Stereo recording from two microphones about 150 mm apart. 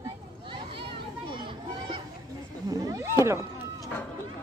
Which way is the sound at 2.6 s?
25° right (ahead or behind).